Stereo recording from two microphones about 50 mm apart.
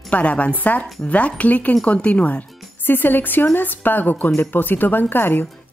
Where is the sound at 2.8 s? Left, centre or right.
Left.